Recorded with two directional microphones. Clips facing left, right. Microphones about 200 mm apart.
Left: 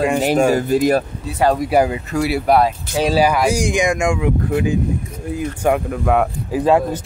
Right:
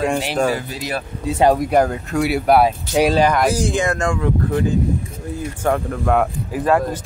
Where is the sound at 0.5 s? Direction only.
45° left (ahead or behind).